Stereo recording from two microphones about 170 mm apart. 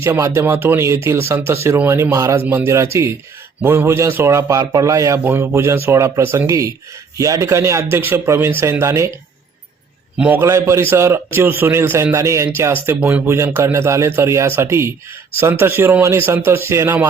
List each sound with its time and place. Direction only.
0.0 s a man's voice: 15° right (ahead or behind)
10.2 s a man's voice: 10° right (ahead or behind)